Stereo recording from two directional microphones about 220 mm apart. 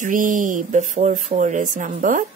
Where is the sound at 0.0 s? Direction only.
35° right (ahead or behind).